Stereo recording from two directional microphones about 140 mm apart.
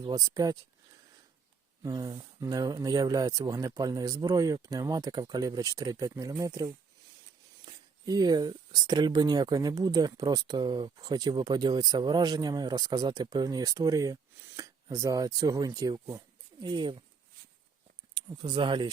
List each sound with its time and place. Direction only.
0.0 s speech: 25° right (ahead or behind)
1.8 s speech: 30° right (ahead or behind)
18.1 s speech: 35° right (ahead or behind)